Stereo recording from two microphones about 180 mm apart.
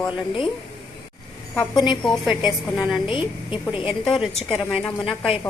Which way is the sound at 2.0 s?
Centre (ahead or behind).